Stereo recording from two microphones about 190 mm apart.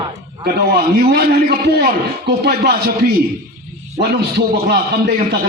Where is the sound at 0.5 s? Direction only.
55° right (ahead or behind).